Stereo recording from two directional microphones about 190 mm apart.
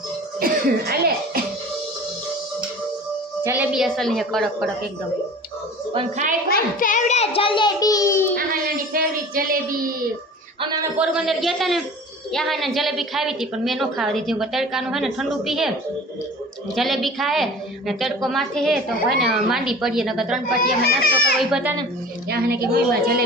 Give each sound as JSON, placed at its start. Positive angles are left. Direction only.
{"t": 0.3, "sound": "cough", "side_deg": -50}
{"t": 3.4, "sound": "a woman's voice", "side_deg": -10}
{"t": 6.5, "sound": "a child's voice", "side_deg": 45}
{"t": 8.9, "sound": "child singing", "side_deg": -50}
{"t": 10.9, "sound": "a woman's voice", "side_deg": -5}
{"t": 16.7, "sound": "a woman's voice", "side_deg": 0}
{"t": 20.6, "sound": "a child's voice", "side_deg": 50}
{"t": 21.3, "sound": "a woman's voice", "side_deg": -5}
{"t": 22.3, "sound": "a woman's voice", "side_deg": -55}